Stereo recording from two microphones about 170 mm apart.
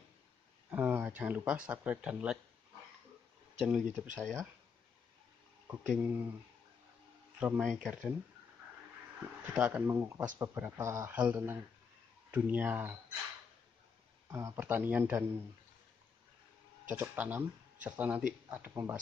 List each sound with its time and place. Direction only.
0.7 s speech: 10° right (ahead or behind)
3.6 s speech: 5° right (ahead or behind)
5.7 s speech: 10° right (ahead or behind)
7.3 s speech: 10° right (ahead or behind)
9.5 s speech: 10° right (ahead or behind)
14.3 s speech: 15° right (ahead or behind)
16.9 s speech: 10° right (ahead or behind)